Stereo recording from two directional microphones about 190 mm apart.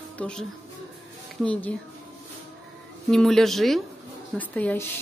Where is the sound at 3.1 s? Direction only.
Centre (ahead or behind).